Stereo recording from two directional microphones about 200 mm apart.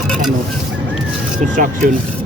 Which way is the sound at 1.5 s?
40° right (ahead or behind).